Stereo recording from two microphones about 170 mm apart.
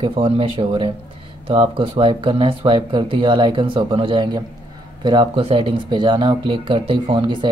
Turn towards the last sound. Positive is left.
turn(degrees=-30)  # may be behind; listen again after turning